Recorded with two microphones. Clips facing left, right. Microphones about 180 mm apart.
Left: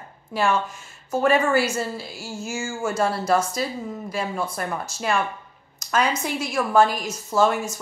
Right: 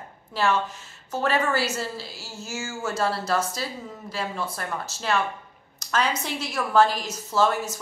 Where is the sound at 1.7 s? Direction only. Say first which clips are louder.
Left 4 dB; 50° left (ahead or behind).